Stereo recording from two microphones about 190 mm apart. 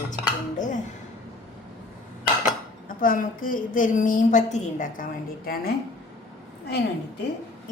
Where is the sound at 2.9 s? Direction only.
45° left (ahead or behind).